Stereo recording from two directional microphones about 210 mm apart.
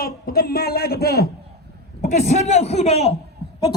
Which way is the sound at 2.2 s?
35° left (ahead or behind).